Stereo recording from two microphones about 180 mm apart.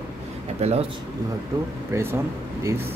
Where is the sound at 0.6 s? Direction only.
35° right (ahead or behind).